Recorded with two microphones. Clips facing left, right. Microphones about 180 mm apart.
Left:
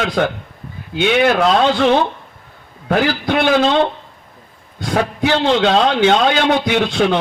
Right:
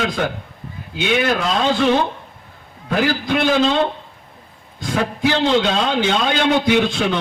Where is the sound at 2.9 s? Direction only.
60° left (ahead or behind).